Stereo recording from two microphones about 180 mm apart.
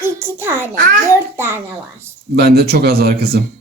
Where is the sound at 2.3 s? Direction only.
65° right (ahead or behind).